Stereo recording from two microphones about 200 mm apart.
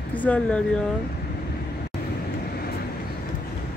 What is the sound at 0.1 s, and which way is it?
Speech, 10° left (ahead or behind).